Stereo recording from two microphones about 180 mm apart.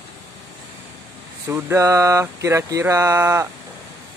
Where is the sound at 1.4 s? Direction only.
15° right (ahead or behind).